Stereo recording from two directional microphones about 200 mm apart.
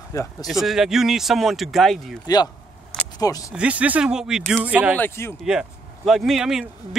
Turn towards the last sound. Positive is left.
turn(degrees=-5)  # may be behind; listen again after turning